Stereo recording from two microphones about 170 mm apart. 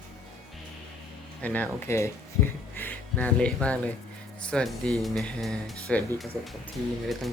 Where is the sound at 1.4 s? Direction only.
10° left (ahead or behind).